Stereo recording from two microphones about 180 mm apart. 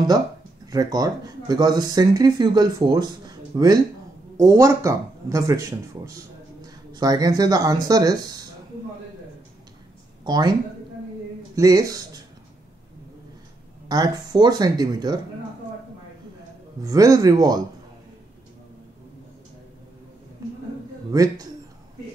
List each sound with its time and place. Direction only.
0.7 s speech: 20° right (ahead or behind)
10.2 s speech: 25° right (ahead or behind)
11.5 s speech: 20° right (ahead or behind)
13.8 s speech: 20° right (ahead or behind)
16.8 s speech: 20° right (ahead or behind)
21.1 s speech: 20° right (ahead or behind)